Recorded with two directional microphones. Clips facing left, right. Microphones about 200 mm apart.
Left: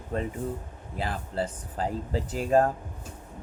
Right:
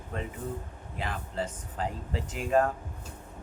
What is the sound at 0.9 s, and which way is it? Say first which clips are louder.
Speech: left 3 dB; 35° left (ahead or behind).